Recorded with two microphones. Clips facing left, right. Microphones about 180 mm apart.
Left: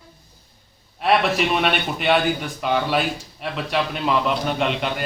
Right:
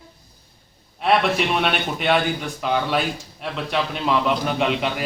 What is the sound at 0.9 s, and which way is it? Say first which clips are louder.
A man's voice: even; centre (ahead or behind).